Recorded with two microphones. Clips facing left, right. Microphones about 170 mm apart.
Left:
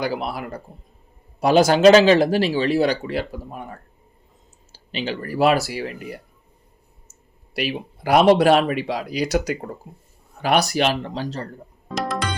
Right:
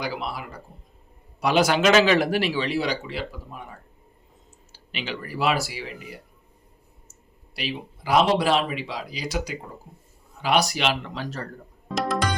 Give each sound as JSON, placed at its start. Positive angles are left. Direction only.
{"t": 0.0, "sound": "speech", "side_deg": 50}
{"t": 1.4, "sound": "speech", "side_deg": 45}
{"t": 4.9, "sound": "speech", "side_deg": 35}
{"t": 5.2, "sound": "speech", "side_deg": 50}
{"t": 7.5, "sound": "speech", "side_deg": 60}
{"t": 10.4, "sound": "speech", "side_deg": 60}
{"t": 11.9, "sound": "music", "side_deg": 0}